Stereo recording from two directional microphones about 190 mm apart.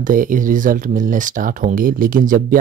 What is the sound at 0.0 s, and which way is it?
Speech, 45° right (ahead or behind).